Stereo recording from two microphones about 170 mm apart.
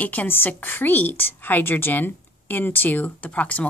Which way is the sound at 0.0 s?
10° left (ahead or behind).